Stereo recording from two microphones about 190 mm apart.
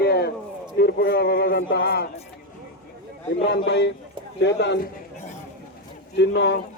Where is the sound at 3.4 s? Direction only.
65° left (ahead or behind).